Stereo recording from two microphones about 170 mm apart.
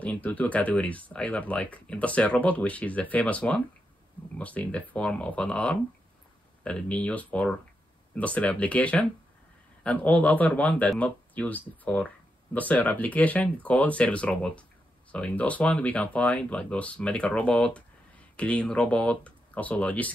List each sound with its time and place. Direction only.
0.0 s speech: 10° left (ahead or behind)